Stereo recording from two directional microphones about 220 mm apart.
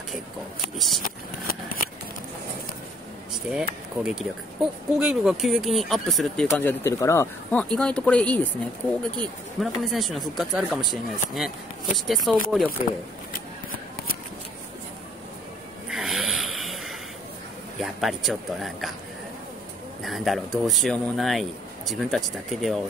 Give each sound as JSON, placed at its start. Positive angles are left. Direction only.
{"t": 0.7, "sound": "speech", "side_deg": 0}
{"t": 1.0, "sound": "scissors", "side_deg": 40}
{"t": 3.4, "sound": "speech", "side_deg": -5}
{"t": 9.6, "sound": "speech", "side_deg": 0}
{"t": 15.9, "sound": "a sound", "side_deg": 0}
{"t": 17.7, "sound": "speech", "side_deg": 0}
{"t": 20.0, "sound": "speech", "side_deg": 0}